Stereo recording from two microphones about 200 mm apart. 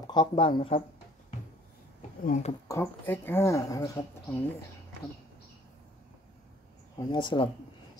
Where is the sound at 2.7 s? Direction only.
10° left (ahead or behind).